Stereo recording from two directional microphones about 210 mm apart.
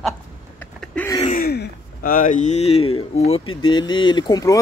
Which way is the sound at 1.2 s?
45° left (ahead or behind).